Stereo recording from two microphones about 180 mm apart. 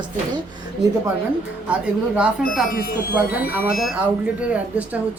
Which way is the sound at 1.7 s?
5° right (ahead or behind).